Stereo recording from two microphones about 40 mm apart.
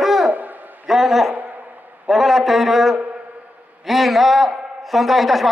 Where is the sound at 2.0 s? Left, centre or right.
Centre.